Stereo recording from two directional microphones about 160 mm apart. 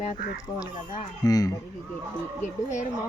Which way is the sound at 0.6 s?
25° left (ahead or behind).